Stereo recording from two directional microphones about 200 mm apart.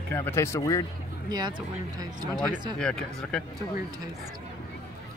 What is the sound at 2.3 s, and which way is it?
Speech, centre (ahead or behind).